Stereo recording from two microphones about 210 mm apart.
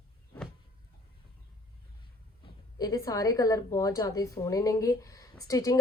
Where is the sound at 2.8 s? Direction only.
15° left (ahead or behind).